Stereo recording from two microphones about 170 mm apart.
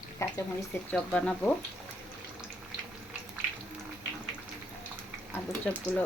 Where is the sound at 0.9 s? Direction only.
5° left (ahead or behind).